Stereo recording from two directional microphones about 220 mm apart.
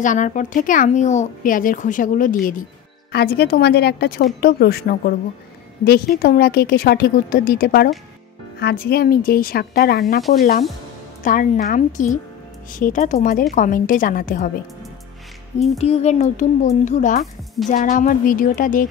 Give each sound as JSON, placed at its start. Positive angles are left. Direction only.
{"t": 0.0, "sound": "a woman's voice", "side_deg": 35}
{"t": 11.2, "sound": "speech", "side_deg": 40}
{"t": 15.8, "sound": "speech", "side_deg": 30}